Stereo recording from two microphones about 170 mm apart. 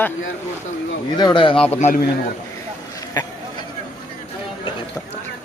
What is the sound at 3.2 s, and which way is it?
Speech, 20° left (ahead or behind).